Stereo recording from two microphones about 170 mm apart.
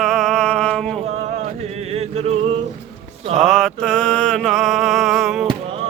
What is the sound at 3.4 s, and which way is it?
Mantra, centre (ahead or behind).